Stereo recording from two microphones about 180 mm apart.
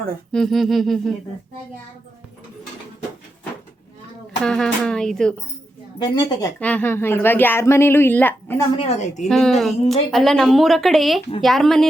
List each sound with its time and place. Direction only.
0.3 s a woman's voice: centre (ahead or behind)
4.4 s a woman's voice: 5° left (ahead or behind)
6.0 s speech: 25° left (ahead or behind)
6.6 s speech: 10° left (ahead or behind)
8.7 s a woman's voice: 35° left (ahead or behind)
9.3 s a woman's voice: centre (ahead or behind)